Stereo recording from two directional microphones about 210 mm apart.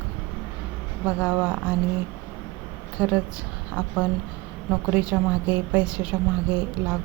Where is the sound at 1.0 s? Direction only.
5° right (ahead or behind).